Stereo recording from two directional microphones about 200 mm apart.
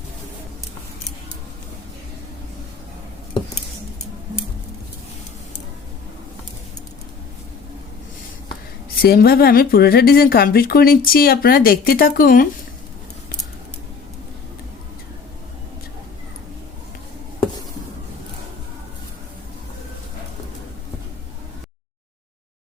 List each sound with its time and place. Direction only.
9.0 s speech: 50° left (ahead or behind)